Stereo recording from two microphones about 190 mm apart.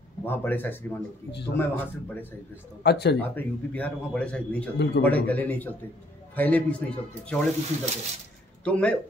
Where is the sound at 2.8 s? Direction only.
60° left (ahead or behind).